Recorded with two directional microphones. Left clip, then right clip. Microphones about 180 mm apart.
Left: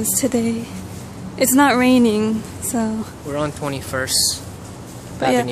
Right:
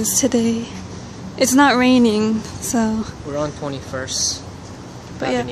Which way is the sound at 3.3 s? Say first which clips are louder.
Left 1 dB; 25° left (ahead or behind).